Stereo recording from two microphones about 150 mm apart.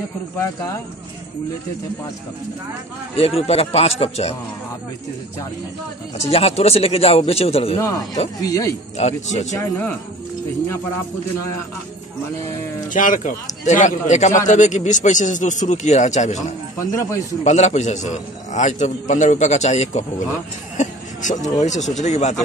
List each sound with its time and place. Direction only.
0.4 s speech: 20° left (ahead or behind)
3.2 s a man's voice: 40° left (ahead or behind)
6.3 s a man's voice: 45° left (ahead or behind)
7.8 s speech: 25° left (ahead or behind)
8.9 s a man's voice: 50° left (ahead or behind)
9.5 s a man's voice: 15° left (ahead or behind)
12.9 s a man's voice: 60° left (ahead or behind)
16.7 s speech: 20° left (ahead or behind)
17.4 s a man's voice: 50° left (ahead or behind)